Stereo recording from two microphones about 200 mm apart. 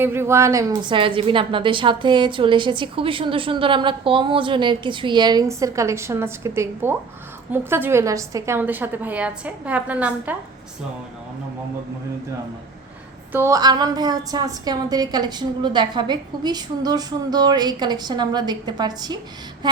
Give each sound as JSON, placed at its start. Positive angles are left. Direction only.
{"t": 0.0, "sound": "a woman's voice", "side_deg": -10}
{"t": 13.3, "sound": "a woman's voice", "side_deg": -15}